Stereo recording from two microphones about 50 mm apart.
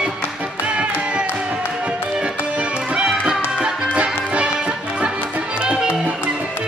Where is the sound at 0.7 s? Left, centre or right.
Right.